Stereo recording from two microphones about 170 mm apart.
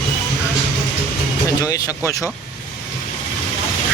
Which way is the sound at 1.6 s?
20° left (ahead or behind).